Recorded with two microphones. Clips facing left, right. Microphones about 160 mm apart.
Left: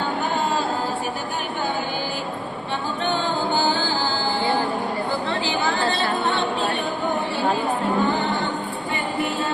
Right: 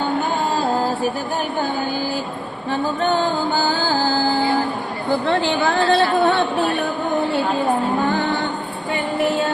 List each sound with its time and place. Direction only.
5.3 s chatter: 60° right (ahead or behind)